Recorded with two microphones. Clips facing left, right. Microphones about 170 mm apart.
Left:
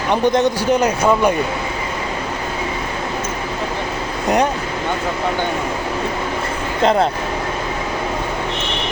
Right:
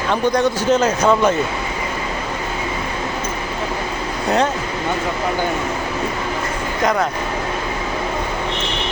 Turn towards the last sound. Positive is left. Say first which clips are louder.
# left 3 dB
turn(degrees=30)  # may be behind; listen again after turning